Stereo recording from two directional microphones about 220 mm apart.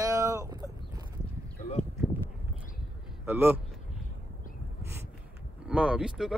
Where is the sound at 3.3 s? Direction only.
10° right (ahead or behind).